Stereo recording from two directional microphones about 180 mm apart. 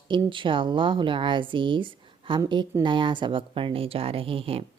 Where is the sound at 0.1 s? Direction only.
25° right (ahead or behind).